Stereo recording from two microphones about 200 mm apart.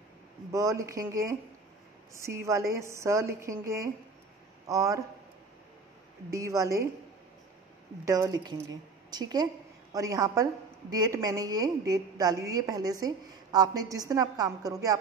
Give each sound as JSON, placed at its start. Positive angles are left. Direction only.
{"t": 0.5, "sound": "a woman's voice", "side_deg": -15}
{"t": 6.3, "sound": "a woman's voice", "side_deg": -15}
{"t": 8.0, "sound": "a woman's voice", "side_deg": -15}